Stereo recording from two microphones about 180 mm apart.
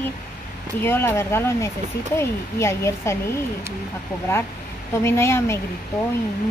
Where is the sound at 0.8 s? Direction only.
10° left (ahead or behind).